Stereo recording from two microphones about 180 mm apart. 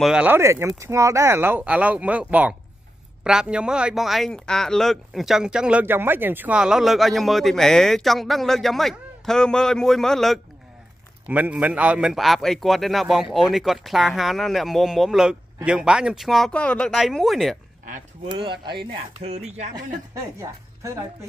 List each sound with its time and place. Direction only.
0.0 s speech: 5° right (ahead or behind)
18.3 s speech: 25° right (ahead or behind)
20.3 s a woman's voice: 15° right (ahead or behind)